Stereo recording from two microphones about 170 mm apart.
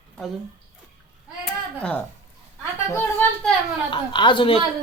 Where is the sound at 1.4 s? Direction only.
5° left (ahead or behind).